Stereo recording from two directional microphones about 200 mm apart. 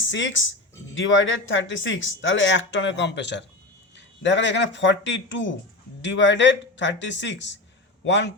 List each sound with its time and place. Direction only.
0.0 s a man's voice: 65° left (ahead or behind)